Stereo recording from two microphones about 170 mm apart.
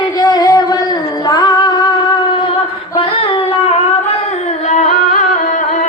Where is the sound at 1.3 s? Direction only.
25° left (ahead or behind).